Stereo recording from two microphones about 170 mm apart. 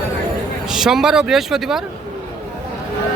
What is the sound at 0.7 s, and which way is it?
Speech, centre (ahead or behind).